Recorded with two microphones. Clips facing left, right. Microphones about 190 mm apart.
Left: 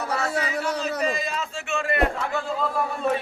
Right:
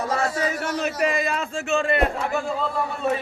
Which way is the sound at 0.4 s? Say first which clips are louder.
Right 2 dB; 65° right (ahead or behind).